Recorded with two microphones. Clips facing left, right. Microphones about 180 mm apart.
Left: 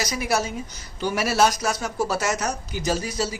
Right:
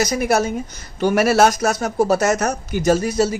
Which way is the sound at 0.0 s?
50° right (ahead or behind).